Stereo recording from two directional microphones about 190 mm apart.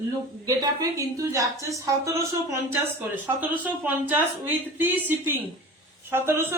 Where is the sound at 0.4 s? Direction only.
20° right (ahead or behind).